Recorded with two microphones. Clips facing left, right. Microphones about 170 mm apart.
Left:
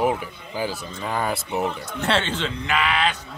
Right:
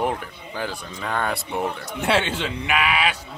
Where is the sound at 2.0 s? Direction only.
10° right (ahead or behind).